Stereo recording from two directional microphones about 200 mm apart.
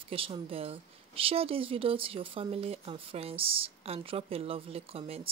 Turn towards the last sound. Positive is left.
turn(degrees=-30)  # may be behind; listen again after turning